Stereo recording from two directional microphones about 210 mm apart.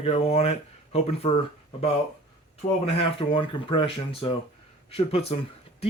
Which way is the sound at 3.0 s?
25° left (ahead or behind).